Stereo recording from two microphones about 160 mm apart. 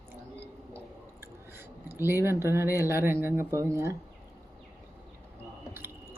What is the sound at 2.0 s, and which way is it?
Speech, 15° right (ahead or behind).